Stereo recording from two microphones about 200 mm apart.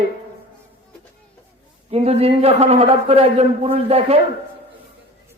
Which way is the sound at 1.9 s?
30° right (ahead or behind).